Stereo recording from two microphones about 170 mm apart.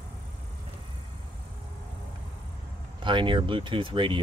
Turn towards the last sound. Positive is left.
turn(degrees=-30)  # may be behind; listen again after turning